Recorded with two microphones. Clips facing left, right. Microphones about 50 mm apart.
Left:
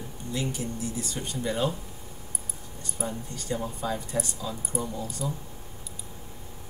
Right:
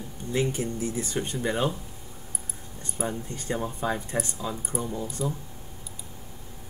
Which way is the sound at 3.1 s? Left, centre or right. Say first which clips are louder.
Right 1 dB; right.